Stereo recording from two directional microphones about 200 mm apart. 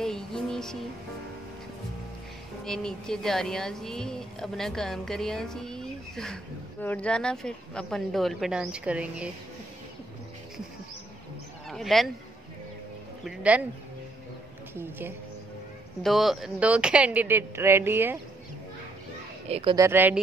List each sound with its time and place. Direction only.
0.0 s music: 5° left (ahead or behind)
2.6 s speech: 5° left (ahead or behind)
11.7 s speech: centre (ahead or behind)
13.2 s speech: 5° right (ahead or behind)
14.8 s speech: 10° right (ahead or behind)
16.0 s speech: centre (ahead or behind)
19.5 s speech: 25° right (ahead or behind)
19.8 s speech: 10° right (ahead or behind)